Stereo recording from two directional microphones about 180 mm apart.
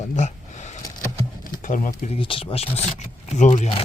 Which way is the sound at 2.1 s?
30° left (ahead or behind).